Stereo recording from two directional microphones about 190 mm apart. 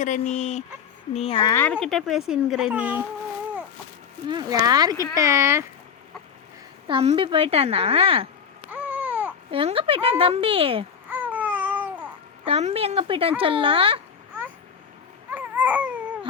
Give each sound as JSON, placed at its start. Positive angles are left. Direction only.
{"t": 0.0, "sound": "a sound", "side_deg": 40}
{"t": 1.1, "sound": "speech", "side_deg": 30}
{"t": 1.5, "sound": "a child's voice", "side_deg": 10}
{"t": 4.3, "sound": "speech", "side_deg": -20}
{"t": 6.8, "sound": "speech", "side_deg": -30}
{"t": 8.7, "sound": "babbling", "side_deg": -10}
{"t": 9.5, "sound": "speech", "side_deg": -30}
{"t": 11.1, "sound": "babbling", "side_deg": -10}
{"t": 12.5, "sound": "speech", "side_deg": -30}
{"t": 15.3, "sound": "babbling", "side_deg": -10}